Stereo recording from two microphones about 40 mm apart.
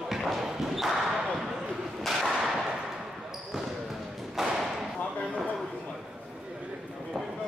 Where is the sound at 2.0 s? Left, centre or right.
Centre.